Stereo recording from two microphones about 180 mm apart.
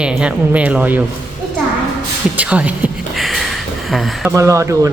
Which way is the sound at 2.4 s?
10° right (ahead or behind).